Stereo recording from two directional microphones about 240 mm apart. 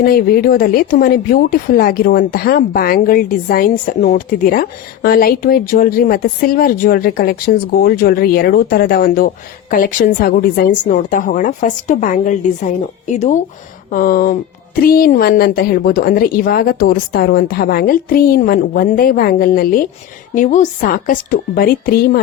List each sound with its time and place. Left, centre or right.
0.0 s speech: left